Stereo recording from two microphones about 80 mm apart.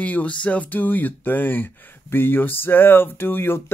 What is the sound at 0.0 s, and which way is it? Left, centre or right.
Speech, centre.